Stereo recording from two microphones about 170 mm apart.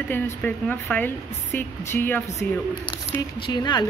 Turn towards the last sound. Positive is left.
turn(degrees=25)  # may be behind; listen again after turning